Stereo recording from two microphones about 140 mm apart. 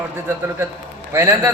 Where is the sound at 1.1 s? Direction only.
20° right (ahead or behind).